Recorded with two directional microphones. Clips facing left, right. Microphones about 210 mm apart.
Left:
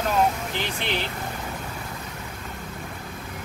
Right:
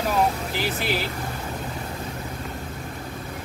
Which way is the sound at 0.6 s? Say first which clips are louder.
Right 3 dB; 5° right (ahead or behind).